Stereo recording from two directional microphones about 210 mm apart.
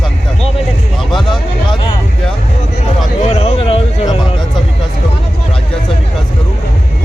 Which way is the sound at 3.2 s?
30° left (ahead or behind).